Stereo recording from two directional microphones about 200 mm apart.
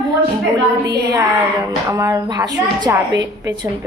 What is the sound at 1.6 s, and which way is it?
A woman's voice, 15° right (ahead or behind).